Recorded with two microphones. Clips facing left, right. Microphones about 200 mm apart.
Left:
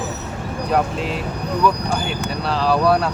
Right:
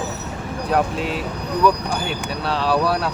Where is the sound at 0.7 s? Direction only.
Centre (ahead or behind).